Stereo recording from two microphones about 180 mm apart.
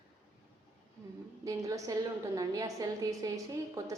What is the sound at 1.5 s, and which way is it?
A woman's voice, 20° right (ahead or behind).